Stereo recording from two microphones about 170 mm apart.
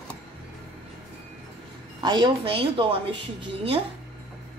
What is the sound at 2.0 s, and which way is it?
A woman's voice, 25° right (ahead or behind).